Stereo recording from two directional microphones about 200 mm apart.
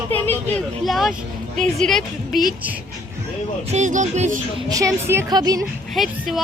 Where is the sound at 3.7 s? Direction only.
35° right (ahead or behind).